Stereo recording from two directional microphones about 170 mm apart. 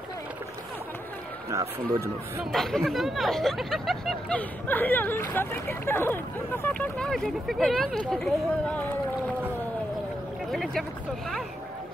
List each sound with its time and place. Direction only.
1.5 s speech: 20° right (ahead or behind)
2.5 s speech: centre (ahead or behind)
10.5 s speech: centre (ahead or behind)